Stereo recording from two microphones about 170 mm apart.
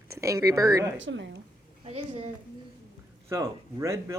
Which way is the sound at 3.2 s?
15° right (ahead or behind).